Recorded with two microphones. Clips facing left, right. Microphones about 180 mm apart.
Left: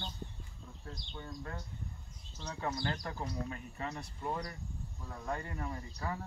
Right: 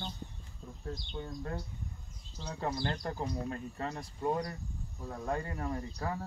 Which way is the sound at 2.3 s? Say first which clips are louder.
Right 2 dB; 35° right (ahead or behind).